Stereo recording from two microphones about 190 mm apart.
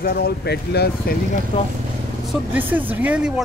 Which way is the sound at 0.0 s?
55° left (ahead or behind).